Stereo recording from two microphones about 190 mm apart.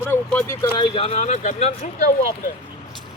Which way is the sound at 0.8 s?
30° left (ahead or behind).